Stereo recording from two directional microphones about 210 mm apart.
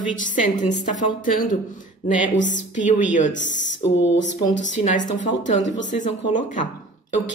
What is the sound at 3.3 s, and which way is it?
Speech, 60° left (ahead or behind).